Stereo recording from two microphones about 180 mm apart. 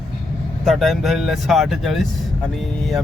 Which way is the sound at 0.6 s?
Centre (ahead or behind).